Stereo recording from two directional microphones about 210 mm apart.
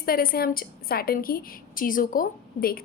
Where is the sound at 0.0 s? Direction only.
45° left (ahead or behind).